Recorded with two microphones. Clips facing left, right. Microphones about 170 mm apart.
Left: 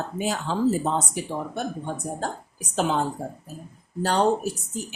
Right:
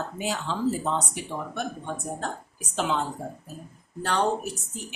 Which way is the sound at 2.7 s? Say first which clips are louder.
Left 3 dB; 45° left (ahead or behind).